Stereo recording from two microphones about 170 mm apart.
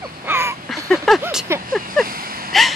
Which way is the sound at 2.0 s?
60° right (ahead or behind).